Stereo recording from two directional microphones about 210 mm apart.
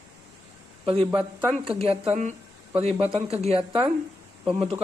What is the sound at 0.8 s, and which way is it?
A man's voice, 25° right (ahead or behind).